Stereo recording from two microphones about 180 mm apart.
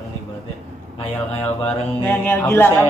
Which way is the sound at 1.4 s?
10° left (ahead or behind).